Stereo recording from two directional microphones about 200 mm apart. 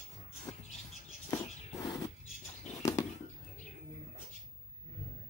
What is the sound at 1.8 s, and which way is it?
Roaring cats, 20° left (ahead or behind).